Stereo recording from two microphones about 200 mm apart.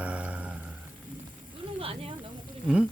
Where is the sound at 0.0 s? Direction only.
5° right (ahead or behind).